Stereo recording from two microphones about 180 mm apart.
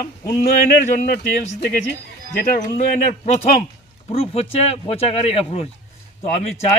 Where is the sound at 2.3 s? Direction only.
45° left (ahead or behind).